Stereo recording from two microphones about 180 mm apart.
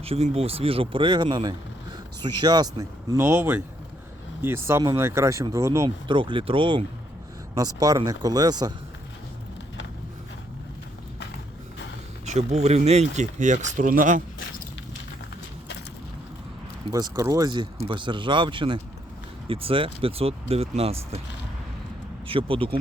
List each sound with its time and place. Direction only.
0.0 s speech: 35° right (ahead or behind); by 5.9 s 15° right (ahead or behind)
6.1 s speech: 30° right (ahead or behind)
12.2 s speech: 35° right (ahead or behind)
16.9 s speech: 20° right (ahead or behind); by 21.2 s 35° right (ahead or behind)
22.3 s speech: 30° right (ahead or behind)